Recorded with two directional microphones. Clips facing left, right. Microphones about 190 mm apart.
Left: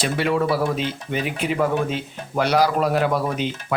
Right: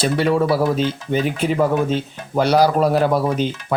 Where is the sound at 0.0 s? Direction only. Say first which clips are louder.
Right 4 dB; 35° right (ahead or behind).